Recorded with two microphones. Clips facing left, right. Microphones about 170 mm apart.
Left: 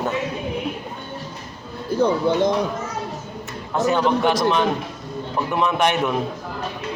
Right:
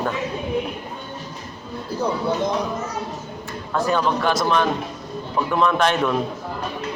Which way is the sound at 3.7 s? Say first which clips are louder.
Left 2 dB; 20° left (ahead or behind).